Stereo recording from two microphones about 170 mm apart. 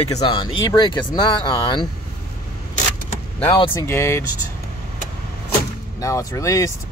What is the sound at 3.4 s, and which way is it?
Speech, 30° left (ahead or behind).